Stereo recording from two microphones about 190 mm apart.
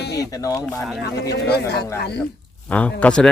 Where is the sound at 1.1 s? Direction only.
60° left (ahead or behind).